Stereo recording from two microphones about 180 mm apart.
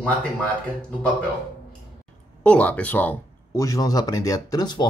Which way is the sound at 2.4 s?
5° left (ahead or behind).